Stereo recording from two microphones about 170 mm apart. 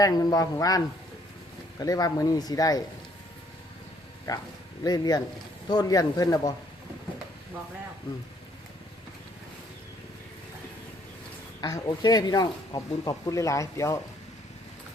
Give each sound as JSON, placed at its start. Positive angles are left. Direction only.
{"t": 0.0, "sound": "speech", "side_deg": 20}
{"t": 1.8, "sound": "speech", "side_deg": 20}
{"t": 4.8, "sound": "speech", "side_deg": 25}
{"t": 11.6, "sound": "speech", "side_deg": 25}